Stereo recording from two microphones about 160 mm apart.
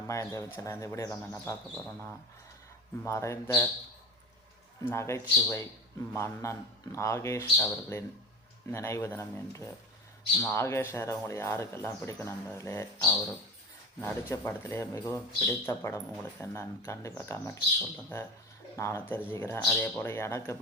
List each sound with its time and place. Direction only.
0.1 s speech: 20° left (ahead or behind)
3.0 s speech: 20° left (ahead or behind)
4.8 s speech: 15° left (ahead or behind)